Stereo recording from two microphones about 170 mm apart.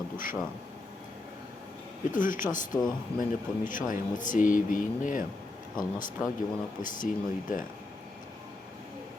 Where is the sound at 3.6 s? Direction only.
50° left (ahead or behind).